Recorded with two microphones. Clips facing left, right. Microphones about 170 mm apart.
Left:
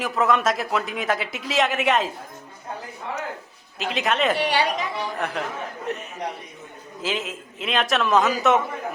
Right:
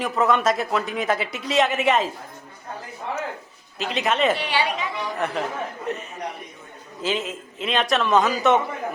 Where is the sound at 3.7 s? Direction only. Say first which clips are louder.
Right 1 dB; centre (ahead or behind).